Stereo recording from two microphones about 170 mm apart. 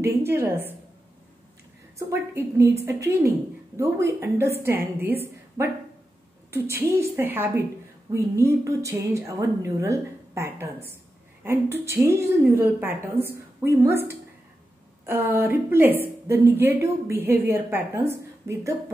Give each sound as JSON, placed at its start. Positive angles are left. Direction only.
{"t": 0.2, "sound": "a woman's voice", "side_deg": -15}
{"t": 2.0, "sound": "a woman's voice", "side_deg": -15}